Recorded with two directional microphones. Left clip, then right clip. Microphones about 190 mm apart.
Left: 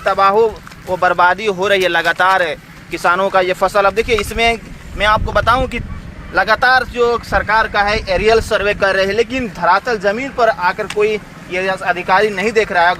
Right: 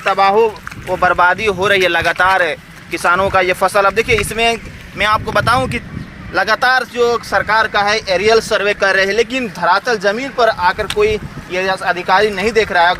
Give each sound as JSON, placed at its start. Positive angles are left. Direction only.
{"t": 0.0, "sound": "speech", "side_deg": -30}